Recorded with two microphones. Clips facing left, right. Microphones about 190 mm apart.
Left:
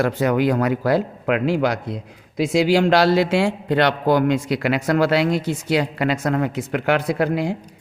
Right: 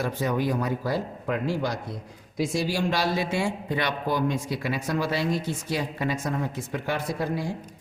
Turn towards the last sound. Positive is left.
turn(degrees=70)  # may be behind; listen again after turning